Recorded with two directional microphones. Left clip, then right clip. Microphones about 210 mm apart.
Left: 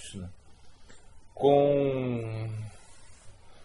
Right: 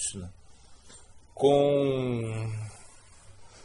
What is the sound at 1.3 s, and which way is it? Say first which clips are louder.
A man's voice: even; 30° right (ahead or behind).